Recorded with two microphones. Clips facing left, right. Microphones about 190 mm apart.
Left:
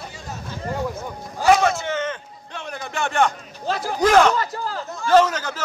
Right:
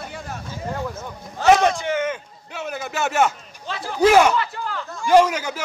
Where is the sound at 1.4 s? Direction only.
15° right (ahead or behind).